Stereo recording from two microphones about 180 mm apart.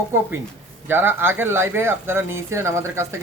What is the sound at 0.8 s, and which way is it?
Speech, 10° right (ahead or behind).